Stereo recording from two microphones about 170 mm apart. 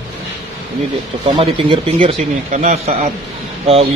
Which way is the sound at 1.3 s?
30° right (ahead or behind).